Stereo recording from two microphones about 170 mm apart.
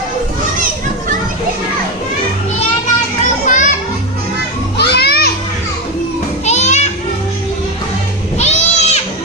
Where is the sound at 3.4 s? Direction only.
45° left (ahead or behind).